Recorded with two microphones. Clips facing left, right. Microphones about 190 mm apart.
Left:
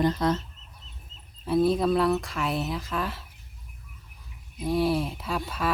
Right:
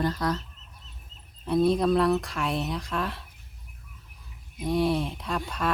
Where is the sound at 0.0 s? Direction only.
20° left (ahead or behind).